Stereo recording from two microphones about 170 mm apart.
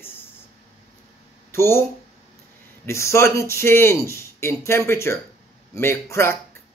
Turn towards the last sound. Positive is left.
turn(degrees=15)  # may be behind; listen again after turning